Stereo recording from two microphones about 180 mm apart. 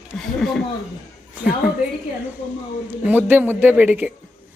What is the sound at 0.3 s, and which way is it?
Speech, centre (ahead or behind).